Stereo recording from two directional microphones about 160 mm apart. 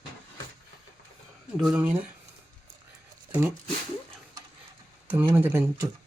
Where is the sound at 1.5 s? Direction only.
5° right (ahead or behind).